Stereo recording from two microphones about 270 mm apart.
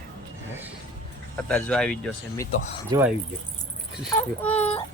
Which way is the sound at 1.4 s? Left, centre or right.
Centre.